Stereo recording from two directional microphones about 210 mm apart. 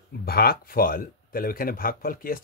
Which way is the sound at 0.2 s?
45° left (ahead or behind).